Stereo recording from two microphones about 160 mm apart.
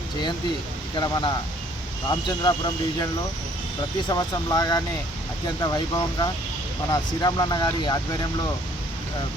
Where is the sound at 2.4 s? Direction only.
25° left (ahead or behind).